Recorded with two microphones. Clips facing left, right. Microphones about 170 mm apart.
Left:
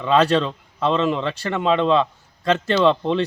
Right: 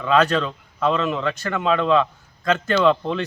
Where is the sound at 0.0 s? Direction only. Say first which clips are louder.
Left 1 dB; 30° left (ahead or behind).